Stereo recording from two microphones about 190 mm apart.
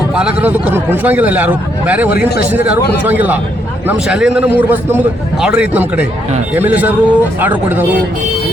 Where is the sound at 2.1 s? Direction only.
55° left (ahead or behind).